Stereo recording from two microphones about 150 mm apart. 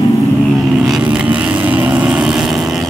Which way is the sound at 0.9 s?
5° right (ahead or behind).